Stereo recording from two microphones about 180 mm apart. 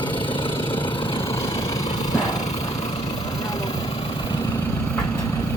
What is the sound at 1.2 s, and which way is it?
Vehicle, 15° left (ahead or behind).